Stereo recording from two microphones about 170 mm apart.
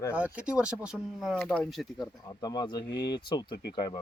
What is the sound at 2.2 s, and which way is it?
Speech, 25° left (ahead or behind).